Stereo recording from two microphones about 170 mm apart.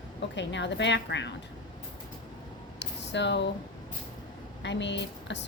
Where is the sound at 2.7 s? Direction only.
90° left.